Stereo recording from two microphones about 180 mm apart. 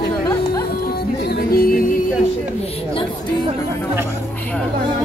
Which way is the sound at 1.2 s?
60° left (ahead or behind).